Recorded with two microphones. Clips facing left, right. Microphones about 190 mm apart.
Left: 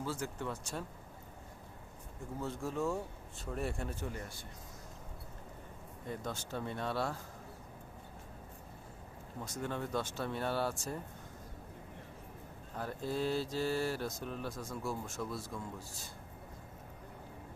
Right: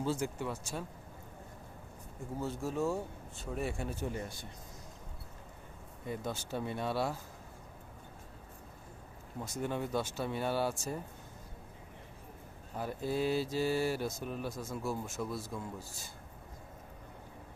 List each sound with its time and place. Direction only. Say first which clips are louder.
0.0 s speech: right 4 dB; 15° right (ahead or behind)
2.4 s speech: right 2 dB; 5° right (ahead or behind)
4.0 s speech: right 4 dB; 20° right (ahead or behind)
6.1 s speech: right 3 dB; 10° right (ahead or behind)
9.4 s speech: right 3 dB; 10° right (ahead or behind)
12.7 s speech: right 3 dB; 10° right (ahead or behind)